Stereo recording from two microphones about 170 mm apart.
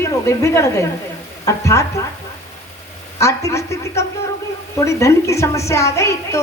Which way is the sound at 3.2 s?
15° left (ahead or behind).